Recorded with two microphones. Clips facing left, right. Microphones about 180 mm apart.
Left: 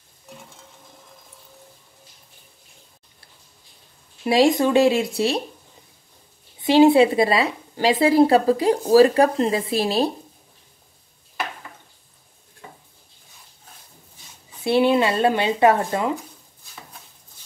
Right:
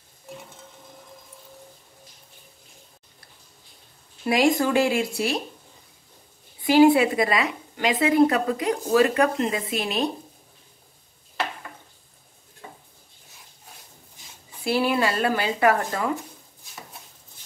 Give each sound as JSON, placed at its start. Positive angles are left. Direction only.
{"t": 4.3, "sound": "speech", "side_deg": 25}
{"t": 6.6, "sound": "a woman's voice", "side_deg": 25}
{"t": 14.6, "sound": "speech", "side_deg": 25}